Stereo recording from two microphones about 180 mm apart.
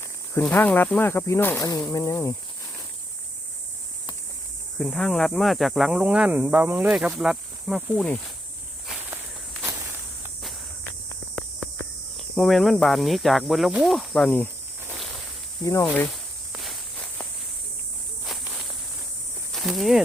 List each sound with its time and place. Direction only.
0.3 s speech: 10° left (ahead or behind)
4.8 s speech: 5° left (ahead or behind)
7.8 s speech: 10° left (ahead or behind)
12.4 s speech: centre (ahead or behind)
15.6 s speech: 15° left (ahead or behind)
16.6 s walk: 5° left (ahead or behind)
19.5 s cricket: centre (ahead or behind)